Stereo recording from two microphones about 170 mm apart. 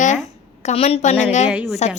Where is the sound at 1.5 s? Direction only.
Centre (ahead or behind).